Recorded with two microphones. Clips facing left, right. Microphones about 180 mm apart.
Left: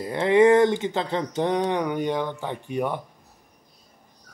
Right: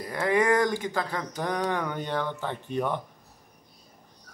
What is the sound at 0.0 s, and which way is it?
Speech, 25° left (ahead or behind).